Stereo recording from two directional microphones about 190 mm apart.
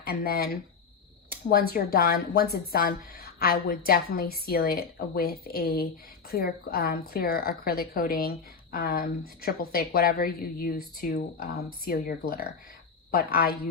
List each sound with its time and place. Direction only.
0.1 s speech: 50° left (ahead or behind)